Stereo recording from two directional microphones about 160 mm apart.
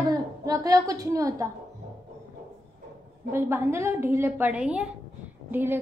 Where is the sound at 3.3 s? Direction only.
15° right (ahead or behind).